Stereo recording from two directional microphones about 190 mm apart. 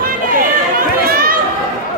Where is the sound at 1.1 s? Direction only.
50° right (ahead or behind).